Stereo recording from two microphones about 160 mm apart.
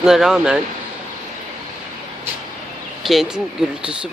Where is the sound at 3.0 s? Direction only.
Centre (ahead or behind).